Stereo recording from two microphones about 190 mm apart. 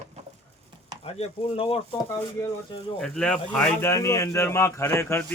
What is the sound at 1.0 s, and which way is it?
Speech, 35° left (ahead or behind).